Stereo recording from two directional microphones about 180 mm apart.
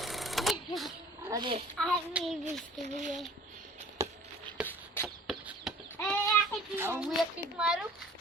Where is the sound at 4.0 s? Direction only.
15° right (ahead or behind).